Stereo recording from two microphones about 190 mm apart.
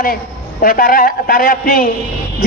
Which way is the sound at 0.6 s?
50° left (ahead or behind).